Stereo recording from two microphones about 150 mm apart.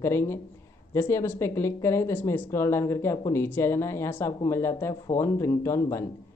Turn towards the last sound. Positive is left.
turn(degrees=20)  # may be behind; listen again after turning